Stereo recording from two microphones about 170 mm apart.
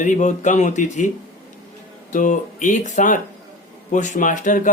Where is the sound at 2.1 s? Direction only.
50° left (ahead or behind).